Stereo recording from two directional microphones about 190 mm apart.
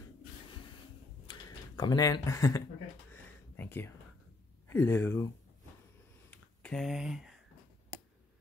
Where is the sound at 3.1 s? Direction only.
10° left (ahead or behind).